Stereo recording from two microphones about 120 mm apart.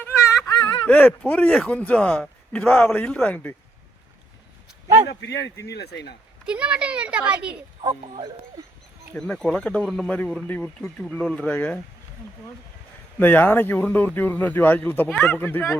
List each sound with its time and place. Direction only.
0.0 s a sound: 25° left (ahead or behind)
0.9 s speech: 15° left (ahead or behind)
6.4 s a child's voice: 10° right (ahead or behind)
9.1 s a man's voice: 5° left (ahead or behind)
10.4 s speech: 10° left (ahead or behind)
13.1 s speech: 15° left (ahead or behind)